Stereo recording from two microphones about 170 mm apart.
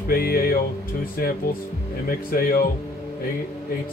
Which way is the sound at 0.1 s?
60° left (ahead or behind).